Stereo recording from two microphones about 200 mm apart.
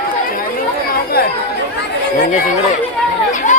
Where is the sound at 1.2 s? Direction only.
50° left (ahead or behind).